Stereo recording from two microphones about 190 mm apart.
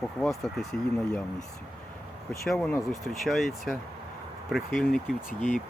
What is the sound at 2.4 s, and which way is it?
Speech, 5° left (ahead or behind).